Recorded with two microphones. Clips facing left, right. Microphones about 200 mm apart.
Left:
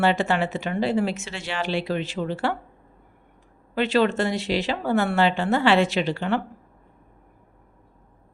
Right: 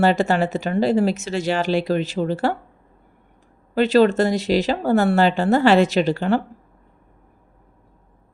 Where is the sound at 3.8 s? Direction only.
40° right (ahead or behind).